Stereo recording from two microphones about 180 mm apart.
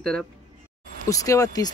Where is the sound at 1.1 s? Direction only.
20° left (ahead or behind).